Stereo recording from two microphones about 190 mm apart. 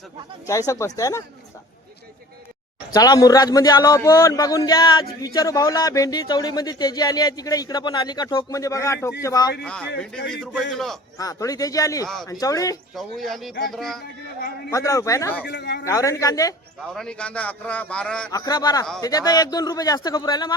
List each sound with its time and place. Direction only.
0.4 s a man's voice: 15° left (ahead or behind)
2.9 s speech: 20° left (ahead or behind)
10.0 s speech: 5° left (ahead or behind)
11.2 s a man's voice: 20° left (ahead or behind)
12.0 s speech: centre (ahead or behind)
12.3 s speech: 20° left (ahead or behind)
13.0 s speech: centre (ahead or behind)
14.7 s a man's voice: 15° left (ahead or behind)
15.4 s a man's voice: 65° left (ahead or behind)
15.9 s a man's voice: 15° left (ahead or behind)
16.9 s a man's voice: 5° left (ahead or behind)
18.3 s speech: 20° left (ahead or behind)